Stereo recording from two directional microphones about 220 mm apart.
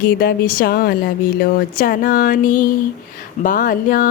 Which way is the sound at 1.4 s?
40° left (ahead or behind).